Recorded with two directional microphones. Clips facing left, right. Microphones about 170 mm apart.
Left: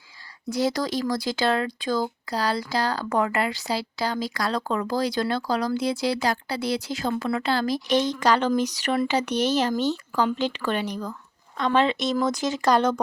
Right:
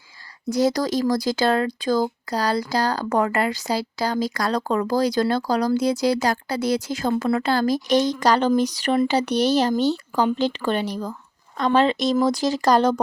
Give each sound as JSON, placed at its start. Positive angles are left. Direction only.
{"t": 0.5, "sound": "speech", "side_deg": -40}